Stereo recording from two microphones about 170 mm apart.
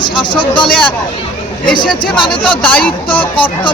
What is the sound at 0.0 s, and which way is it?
Speech, 25° left (ahead or behind).